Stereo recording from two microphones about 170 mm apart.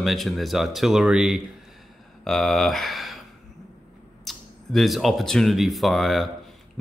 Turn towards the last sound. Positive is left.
turn(degrees=0)  # may be behind; listen again after turning